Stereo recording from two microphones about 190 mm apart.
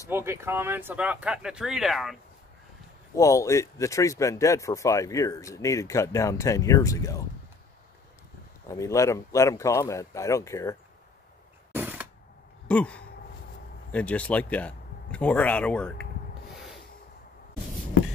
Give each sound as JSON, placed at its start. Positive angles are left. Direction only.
{"t": 0.1, "sound": "speech", "side_deg": -10}
{"t": 3.2, "sound": "speech", "side_deg": 15}
{"t": 8.6, "sound": "speech", "side_deg": 15}
{"t": 11.7, "sound": "a sound", "side_deg": -10}
{"t": 12.6, "sound": "a sound", "side_deg": 5}
{"t": 13.9, "sound": "speech", "side_deg": 5}